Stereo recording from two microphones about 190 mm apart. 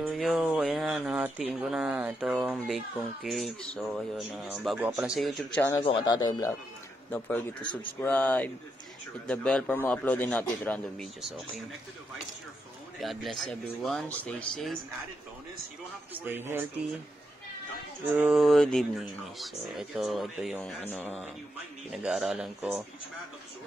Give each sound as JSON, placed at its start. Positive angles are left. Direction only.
{"t": 0.0, "sound": "speech", "side_deg": -5}
{"t": 5.8, "sound": "a man's voice", "side_deg": 25}
{"t": 7.1, "sound": "speech", "side_deg": 10}
{"t": 7.6, "sound": "a man's voice", "side_deg": 25}
{"t": 8.0, "sound": "speech", "side_deg": 10}
{"t": 13.0, "sound": "speech", "side_deg": 0}
{"t": 16.1, "sound": "speech", "side_deg": -10}
{"t": 18.1, "sound": "speech", "side_deg": -5}
{"t": 21.9, "sound": "speech", "side_deg": 0}